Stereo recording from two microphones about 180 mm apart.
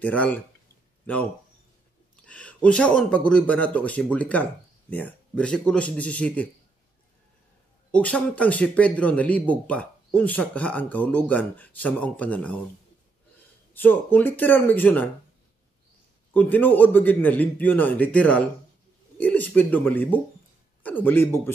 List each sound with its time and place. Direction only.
0.0 s speech: 10° left (ahead or behind)
2.2 s speech: 5° left (ahead or behind)
7.9 s speech: 5° left (ahead or behind)
13.7 s speech: 10° left (ahead or behind)
16.3 s speech: 10° left (ahead or behind)